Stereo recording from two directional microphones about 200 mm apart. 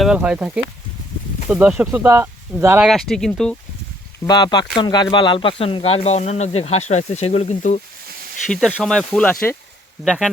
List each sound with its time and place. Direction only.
0.0 s speech: 5° right (ahead or behind)
2.8 s speech: centre (ahead or behind)
4.3 s speech: 20° left (ahead or behind)
8.4 s speech: centre (ahead or behind)